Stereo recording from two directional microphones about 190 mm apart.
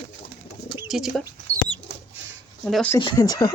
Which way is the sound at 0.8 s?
Centre (ahead or behind).